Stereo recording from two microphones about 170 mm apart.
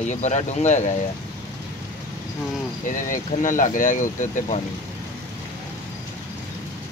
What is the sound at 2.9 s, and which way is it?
Speech, 50° left (ahead or behind).